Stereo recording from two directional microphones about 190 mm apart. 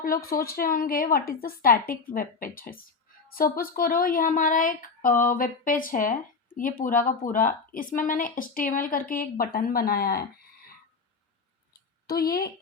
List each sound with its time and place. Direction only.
0.0 s a woman's voice: 50° left (ahead or behind)
12.0 s a woman's voice: 50° left (ahead or behind)